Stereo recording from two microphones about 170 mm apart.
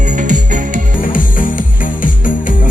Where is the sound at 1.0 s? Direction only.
55° left (ahead or behind).